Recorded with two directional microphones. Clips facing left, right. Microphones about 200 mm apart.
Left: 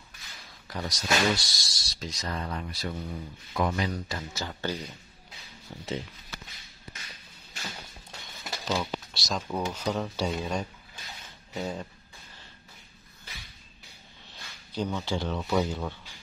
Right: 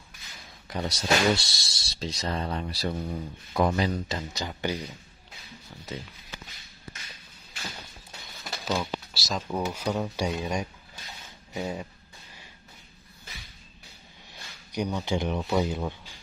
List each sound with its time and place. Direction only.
0.7 s speech: 25° right (ahead or behind)
8.5 s speech: centre (ahead or behind)
14.7 s speech: 15° right (ahead or behind)